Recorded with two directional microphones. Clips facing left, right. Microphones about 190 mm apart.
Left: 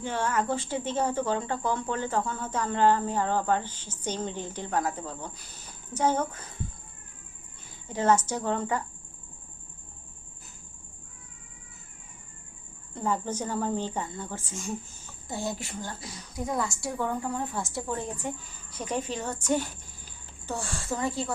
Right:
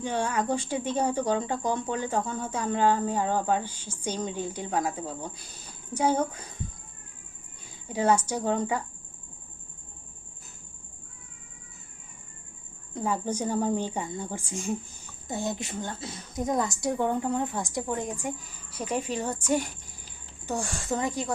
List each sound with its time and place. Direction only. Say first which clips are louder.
0.0 s a woman's voice: right 1 dB; 15° right (ahead or behind)
7.9 s a woman's voice: even; 10° right (ahead or behind)
12.9 s a woman's voice: right 1 dB; 10° right (ahead or behind)